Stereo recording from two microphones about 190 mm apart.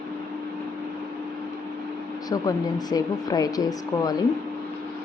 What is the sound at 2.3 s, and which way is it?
Speech, 20° left (ahead or behind).